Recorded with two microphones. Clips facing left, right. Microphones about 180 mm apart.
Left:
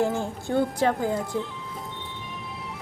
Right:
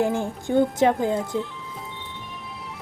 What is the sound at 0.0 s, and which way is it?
Speech, 15° right (ahead or behind).